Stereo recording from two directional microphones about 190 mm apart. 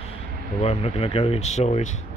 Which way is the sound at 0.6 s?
30° left (ahead or behind).